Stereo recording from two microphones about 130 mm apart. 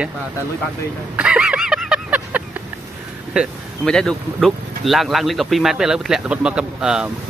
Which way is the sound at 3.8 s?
5° left (ahead or behind).